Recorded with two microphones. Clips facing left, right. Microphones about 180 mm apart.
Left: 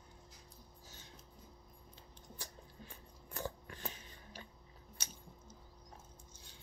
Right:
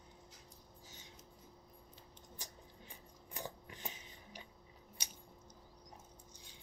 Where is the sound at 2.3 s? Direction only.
15° right (ahead or behind).